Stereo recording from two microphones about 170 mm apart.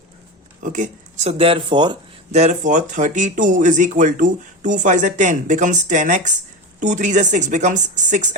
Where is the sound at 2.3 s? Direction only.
45° right (ahead or behind).